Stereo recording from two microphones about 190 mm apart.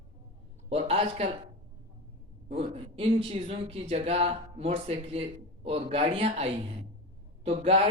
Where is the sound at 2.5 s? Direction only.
30° right (ahead or behind).